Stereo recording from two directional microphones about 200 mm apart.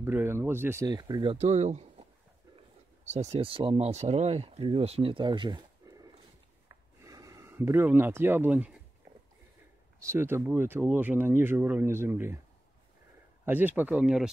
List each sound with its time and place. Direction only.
0.0 s speech: 10° right (ahead or behind); by 2.0 s 35° right (ahead or behind)
3.1 s speech: 35° right (ahead or behind); by 8.7 s 10° right (ahead or behind)
9.9 s speech: 15° right (ahead or behind)
13.5 s speech: 10° right (ahead or behind)